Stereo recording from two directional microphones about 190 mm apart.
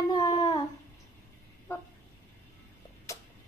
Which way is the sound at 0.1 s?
20° left (ahead or behind).